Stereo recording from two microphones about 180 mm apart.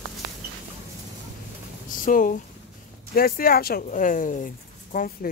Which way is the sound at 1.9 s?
50° left (ahead or behind).